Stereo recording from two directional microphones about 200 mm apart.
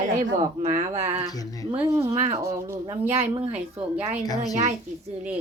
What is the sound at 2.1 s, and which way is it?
Speech, 30° right (ahead or behind).